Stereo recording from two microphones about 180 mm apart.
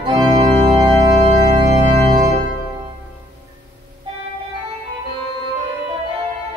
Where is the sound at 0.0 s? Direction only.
25° right (ahead or behind).